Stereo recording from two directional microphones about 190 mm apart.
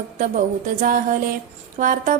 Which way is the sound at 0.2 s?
45° right (ahead or behind).